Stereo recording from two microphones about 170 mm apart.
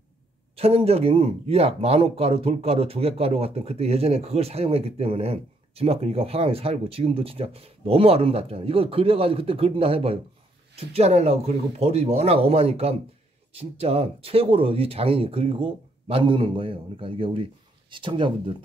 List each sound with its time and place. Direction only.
0.6 s speech: 35° right (ahead or behind)